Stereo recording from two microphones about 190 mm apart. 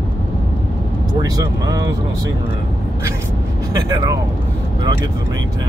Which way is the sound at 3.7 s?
20° right (ahead or behind).